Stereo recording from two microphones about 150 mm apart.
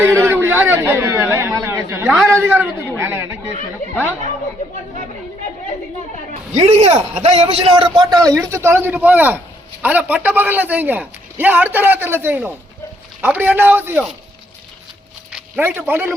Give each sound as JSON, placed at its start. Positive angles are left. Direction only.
{"t": 0.3, "sound": "a man's voice", "side_deg": -15}
{"t": 6.5, "sound": "a man's voice", "side_deg": -45}
{"t": 7.5, "sound": "a man's voice", "side_deg": -35}
{"t": 15.3, "sound": "a sound", "side_deg": -5}
{"t": 15.6, "sound": "a man's voice", "side_deg": -15}